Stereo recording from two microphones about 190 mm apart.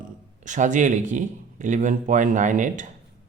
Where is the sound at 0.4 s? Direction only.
40° right (ahead or behind).